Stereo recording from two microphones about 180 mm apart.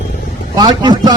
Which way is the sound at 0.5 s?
20° right (ahead or behind).